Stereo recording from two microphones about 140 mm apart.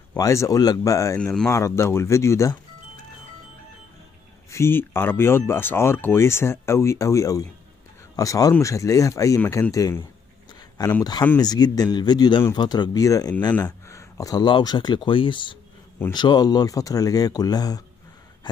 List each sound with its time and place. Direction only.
0.2 s speech: 25° left (ahead or behind)
1.2 s speech: 5° left (ahead or behind)
1.5 s speech: 20° left (ahead or behind)
4.5 s speech: 20° left (ahead or behind)